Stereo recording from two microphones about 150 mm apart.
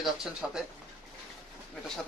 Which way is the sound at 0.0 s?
5° right (ahead or behind).